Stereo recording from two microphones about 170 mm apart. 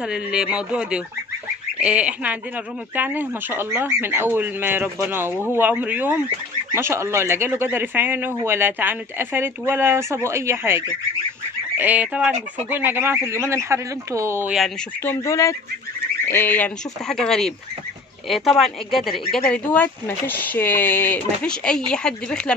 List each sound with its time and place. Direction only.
0.0 s speech: 5° right (ahead or behind)
15.0 s speech: 20° left (ahead or behind)